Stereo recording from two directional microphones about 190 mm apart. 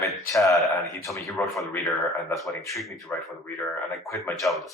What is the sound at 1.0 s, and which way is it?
Speech, 15° left (ahead or behind).